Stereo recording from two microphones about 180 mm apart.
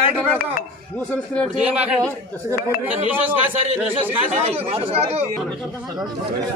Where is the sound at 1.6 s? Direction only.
5° right (ahead or behind).